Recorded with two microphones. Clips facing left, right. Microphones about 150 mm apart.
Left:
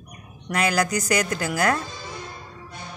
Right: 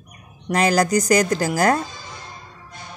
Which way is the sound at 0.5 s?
35° right (ahead or behind).